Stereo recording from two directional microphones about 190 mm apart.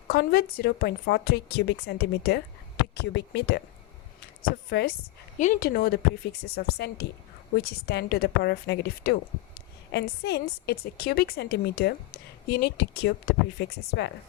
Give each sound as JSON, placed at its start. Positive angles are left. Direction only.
{"t": 0.1, "sound": "a woman's voice", "side_deg": 50}
{"t": 5.4, "sound": "a woman's voice", "side_deg": 45}